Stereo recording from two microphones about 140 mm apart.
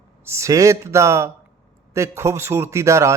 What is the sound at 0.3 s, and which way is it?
A man's voice, 20° right (ahead or behind).